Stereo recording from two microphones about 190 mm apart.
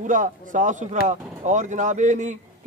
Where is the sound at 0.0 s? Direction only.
45° right (ahead or behind).